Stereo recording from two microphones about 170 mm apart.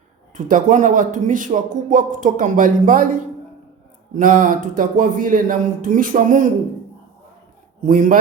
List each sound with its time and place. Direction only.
0.3 s a man's voice: 50° right (ahead or behind)
7.9 s a man's voice: 50° right (ahead or behind)